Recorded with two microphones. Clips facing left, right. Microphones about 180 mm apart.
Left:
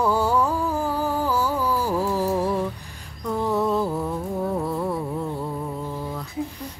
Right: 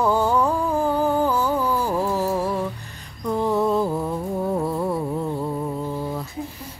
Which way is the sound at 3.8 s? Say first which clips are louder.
Right 2 dB; 15° right (ahead or behind).